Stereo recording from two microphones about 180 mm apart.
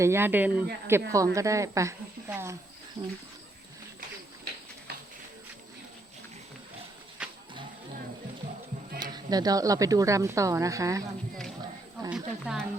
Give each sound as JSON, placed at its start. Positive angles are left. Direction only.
{"t": 0.0, "sound": "speech", "side_deg": -15}
{"t": 7.2, "sound": "vehicle", "side_deg": -5}
{"t": 9.0, "sound": "speech", "side_deg": -20}
{"t": 12.1, "sound": "speech", "side_deg": -5}